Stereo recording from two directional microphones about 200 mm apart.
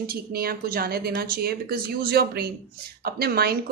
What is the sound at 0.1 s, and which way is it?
A woman's voice, 50° right (ahead or behind).